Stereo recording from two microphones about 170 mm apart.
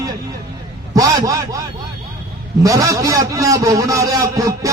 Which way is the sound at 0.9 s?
20° right (ahead or behind).